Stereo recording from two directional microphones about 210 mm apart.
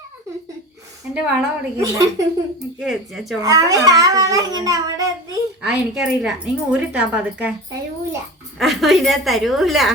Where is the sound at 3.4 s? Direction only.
15° right (ahead or behind).